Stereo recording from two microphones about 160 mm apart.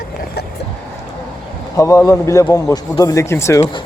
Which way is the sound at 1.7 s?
20° left (ahead or behind).